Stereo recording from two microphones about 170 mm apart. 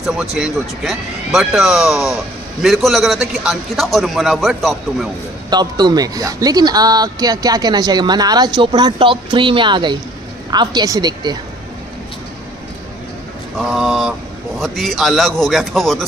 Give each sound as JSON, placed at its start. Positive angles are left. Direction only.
{"t": 0.0, "sound": "speech", "side_deg": -5}
{"t": 5.5, "sound": "speech", "side_deg": -25}
{"t": 13.6, "sound": "speech", "side_deg": -5}